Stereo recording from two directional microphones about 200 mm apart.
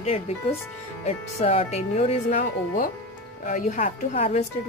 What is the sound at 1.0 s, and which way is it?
Speech, 35° left (ahead or behind).